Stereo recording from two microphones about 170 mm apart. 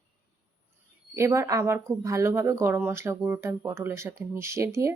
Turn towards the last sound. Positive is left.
turn(degrees=-15)  # may be behind; listen again after turning